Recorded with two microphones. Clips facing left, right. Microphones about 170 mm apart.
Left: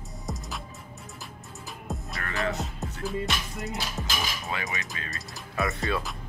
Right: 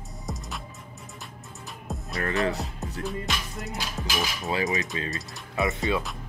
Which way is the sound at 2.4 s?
35° right (ahead or behind).